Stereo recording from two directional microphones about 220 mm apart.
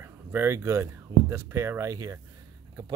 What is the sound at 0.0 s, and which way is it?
Speech, 10° right (ahead or behind).